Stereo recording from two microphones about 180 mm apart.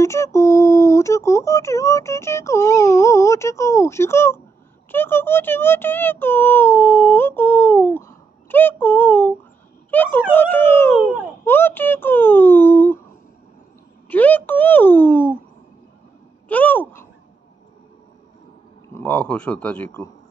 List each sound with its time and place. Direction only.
0.0 s speech: 15° left (ahead or behind)
14.0 s speech: 10° left (ahead or behind)
16.4 s speech: 10° left (ahead or behind)
18.9 s speech: 10° left (ahead or behind)